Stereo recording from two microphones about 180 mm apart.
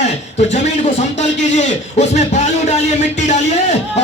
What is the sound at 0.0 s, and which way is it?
A man's voice, 40° left (ahead or behind).